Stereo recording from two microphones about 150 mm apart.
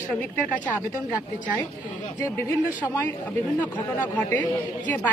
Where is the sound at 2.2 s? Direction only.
15° left (ahead or behind).